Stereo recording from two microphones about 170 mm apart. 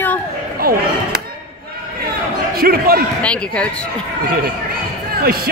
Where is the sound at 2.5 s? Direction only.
60° right (ahead or behind).